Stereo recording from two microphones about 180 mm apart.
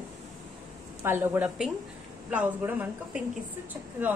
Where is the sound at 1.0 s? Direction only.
10° right (ahead or behind).